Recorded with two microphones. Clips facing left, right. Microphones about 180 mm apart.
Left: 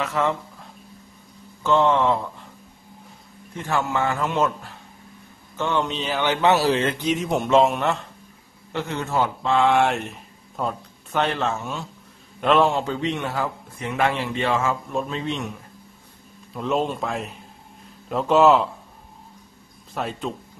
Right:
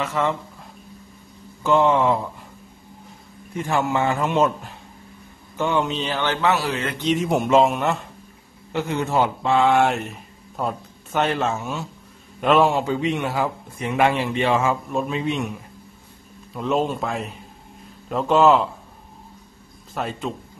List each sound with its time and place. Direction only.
0.0 s a man's voice: centre (ahead or behind)
1.6 s a man's voice: 10° right (ahead or behind)
3.5 s a man's voice: 15° right (ahead or behind)
5.6 s a man's voice: 10° right (ahead or behind)
5.9 s a man's voice: centre (ahead or behind)
6.1 s speech: 15° left (ahead or behind)
7.0 s a man's voice: 5° left (ahead or behind); by 9.6 s 15° right (ahead or behind)
9.6 s a man's voice: centre (ahead or behind)
16.5 s a man's voice: centre (ahead or behind)
19.9 s a man's voice: centre (ahead or behind)